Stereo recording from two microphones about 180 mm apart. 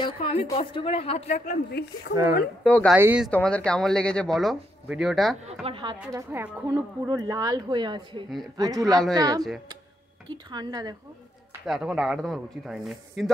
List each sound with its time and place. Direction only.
0.0 s a woman's voice: 35° left (ahead or behind)
1.7 s speech: 65° left (ahead or behind)
2.6 s speech: 5° left (ahead or behind)
2.9 s a woman's voice: 5° right (ahead or behind)
3.3 s speech: 5° left (ahead or behind)
5.5 s a woman's voice: 30° right (ahead or behind)
6.1 s a woman's voice: 10° right (ahead or behind)
10.2 s speech: 25° right (ahead or behind)
11.6 s speech: 5° right (ahead or behind)